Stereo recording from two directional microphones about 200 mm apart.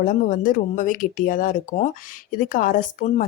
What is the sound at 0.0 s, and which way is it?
Speech, 40° left (ahead or behind).